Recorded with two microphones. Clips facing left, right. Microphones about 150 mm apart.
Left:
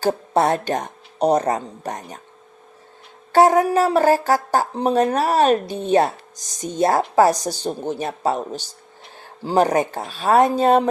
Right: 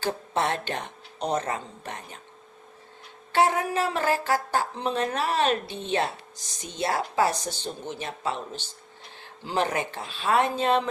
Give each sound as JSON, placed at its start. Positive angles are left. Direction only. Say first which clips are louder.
{"t": 0.0, "sound": "speech", "louder": "left 8 dB", "side_deg": 40}
{"t": 3.3, "sound": "speech", "louder": "left 9 dB", "side_deg": 40}